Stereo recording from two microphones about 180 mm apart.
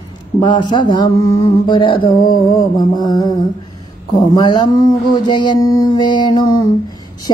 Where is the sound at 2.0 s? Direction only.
50° left (ahead or behind).